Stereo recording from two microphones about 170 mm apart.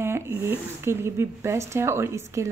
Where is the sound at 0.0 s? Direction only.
15° right (ahead or behind).